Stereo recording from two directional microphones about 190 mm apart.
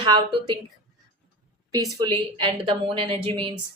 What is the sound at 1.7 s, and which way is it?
Speech, 20° right (ahead or behind).